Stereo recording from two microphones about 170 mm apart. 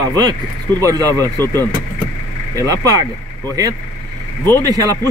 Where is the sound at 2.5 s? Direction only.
20° right (ahead or behind).